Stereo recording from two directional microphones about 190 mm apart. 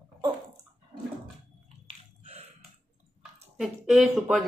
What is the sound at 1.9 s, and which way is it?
Biting, 30° right (ahead or behind).